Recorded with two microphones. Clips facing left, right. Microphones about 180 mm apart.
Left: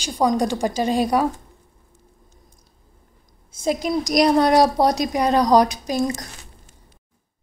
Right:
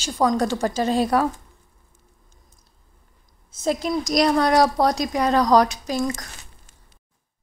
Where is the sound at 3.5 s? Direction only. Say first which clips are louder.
Left 1 dB; 10° left (ahead or behind).